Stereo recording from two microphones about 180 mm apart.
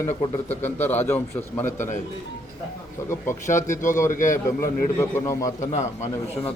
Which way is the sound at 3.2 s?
45° left (ahead or behind).